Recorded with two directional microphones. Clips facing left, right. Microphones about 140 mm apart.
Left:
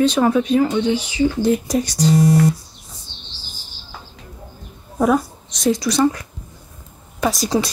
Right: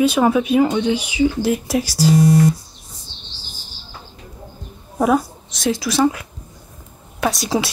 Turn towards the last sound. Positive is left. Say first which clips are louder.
# left 1 dB
turn(degrees=0)  # may be behind; listen again after turning